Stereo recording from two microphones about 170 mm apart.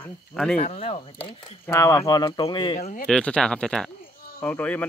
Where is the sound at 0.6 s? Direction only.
40° left (ahead or behind).